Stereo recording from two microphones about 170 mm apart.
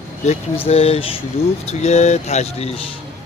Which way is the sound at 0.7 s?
35° left (ahead or behind).